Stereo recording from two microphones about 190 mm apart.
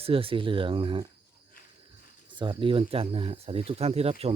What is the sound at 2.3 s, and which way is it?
Speech, 25° right (ahead or behind).